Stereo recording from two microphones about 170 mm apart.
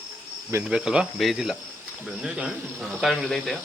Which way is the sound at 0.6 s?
5° right (ahead or behind).